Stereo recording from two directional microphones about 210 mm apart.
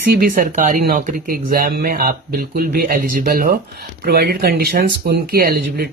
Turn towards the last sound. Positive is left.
turn(degrees=-45)  # may be behind; listen again after turning